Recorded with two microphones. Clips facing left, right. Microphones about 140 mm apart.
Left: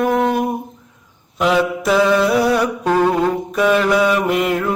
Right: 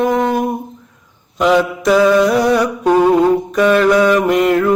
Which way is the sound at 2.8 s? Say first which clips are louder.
Right 5 dB; 15° right (ahead or behind).